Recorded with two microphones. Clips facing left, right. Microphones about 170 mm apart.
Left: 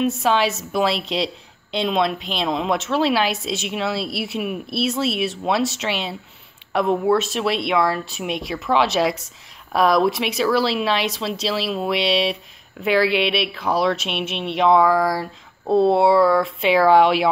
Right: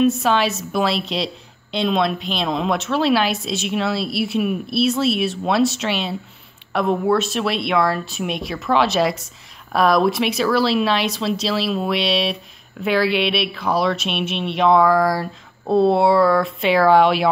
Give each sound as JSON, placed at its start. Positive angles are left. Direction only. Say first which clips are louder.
{"t": 0.0, "sound": "a woman's voice", "louder": "right 2 dB", "side_deg": 20}